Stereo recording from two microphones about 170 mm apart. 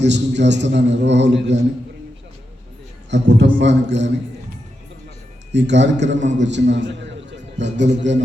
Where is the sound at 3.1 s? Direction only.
90° right.